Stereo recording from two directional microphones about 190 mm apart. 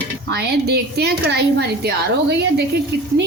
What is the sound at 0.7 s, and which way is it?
Speech, 60° right (ahead or behind).